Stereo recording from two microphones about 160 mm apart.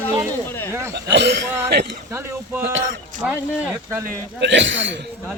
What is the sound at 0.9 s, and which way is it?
Speech, 90° right.